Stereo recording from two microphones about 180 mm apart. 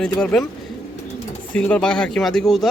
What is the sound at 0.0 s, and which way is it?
Speech, 5° left (ahead or behind).